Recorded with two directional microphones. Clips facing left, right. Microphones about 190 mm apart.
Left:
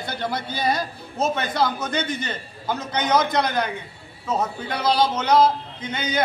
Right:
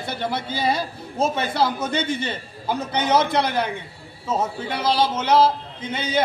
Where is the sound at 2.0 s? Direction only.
30° right (ahead or behind).